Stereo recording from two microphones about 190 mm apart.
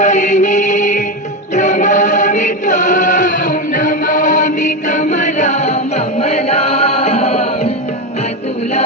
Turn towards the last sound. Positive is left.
turn(degrees=30)  # may be behind; listen again after turning